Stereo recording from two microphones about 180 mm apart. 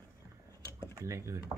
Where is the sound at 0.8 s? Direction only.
15° right (ahead or behind).